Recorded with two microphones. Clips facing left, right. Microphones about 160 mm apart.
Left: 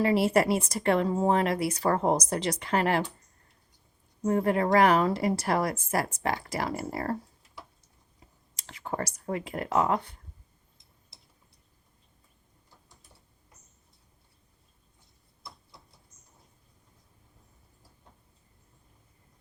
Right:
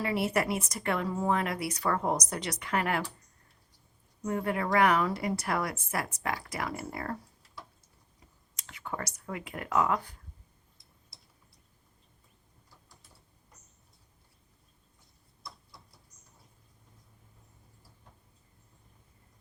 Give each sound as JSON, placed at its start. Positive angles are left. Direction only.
{"t": 0.3, "sound": "a woman's voice", "side_deg": 30}
{"t": 4.2, "sound": "a woman's voice", "side_deg": 35}
{"t": 8.5, "sound": "speech", "side_deg": 35}